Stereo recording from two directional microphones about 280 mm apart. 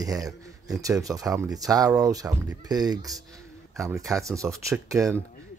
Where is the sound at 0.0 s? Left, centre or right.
Centre.